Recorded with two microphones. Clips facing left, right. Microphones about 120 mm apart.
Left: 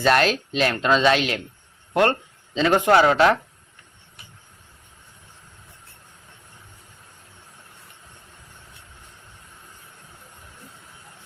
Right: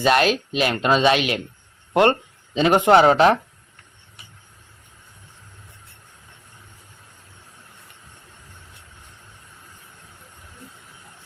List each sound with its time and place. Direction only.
0.0 s speech: 10° right (ahead or behind); by 3.3 s 25° right (ahead or behind)